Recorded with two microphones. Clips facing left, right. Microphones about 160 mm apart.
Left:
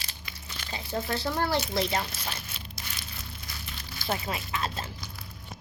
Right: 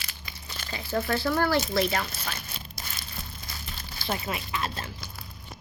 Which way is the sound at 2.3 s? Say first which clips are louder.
Right 1 dB; 40° right (ahead or behind).